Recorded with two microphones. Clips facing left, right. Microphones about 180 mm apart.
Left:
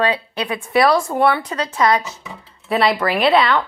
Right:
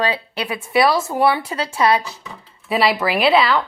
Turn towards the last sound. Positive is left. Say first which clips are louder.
# even
turn(degrees=0)  # may be behind; listen again after turning